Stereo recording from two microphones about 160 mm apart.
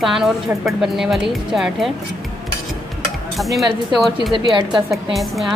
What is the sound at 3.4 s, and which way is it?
Speech, centre (ahead or behind).